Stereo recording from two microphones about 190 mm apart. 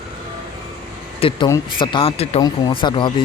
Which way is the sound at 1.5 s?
20° left (ahead or behind).